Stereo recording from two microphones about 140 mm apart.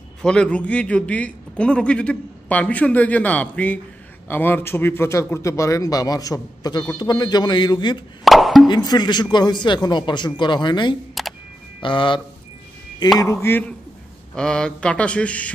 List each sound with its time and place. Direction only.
0.2 s a man's voice: 5° left (ahead or behind); by 8.0 s 30° left (ahead or behind)
8.2 s plop: centre (ahead or behind)
8.6 s a man's voice: 30° left (ahead or behind)
13.2 s a man's voice: 20° left (ahead or behind)